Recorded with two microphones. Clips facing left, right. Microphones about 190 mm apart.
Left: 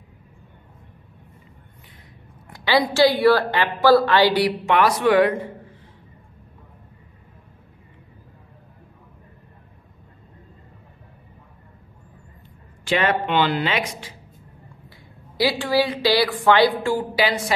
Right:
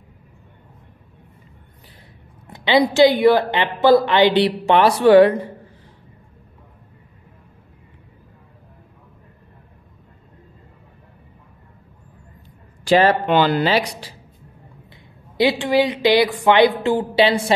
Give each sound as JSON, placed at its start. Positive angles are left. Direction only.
{"t": 2.4, "sound": "speech", "side_deg": -20}
{"t": 12.8, "sound": "speech", "side_deg": -35}
{"t": 15.3, "sound": "speech", "side_deg": -20}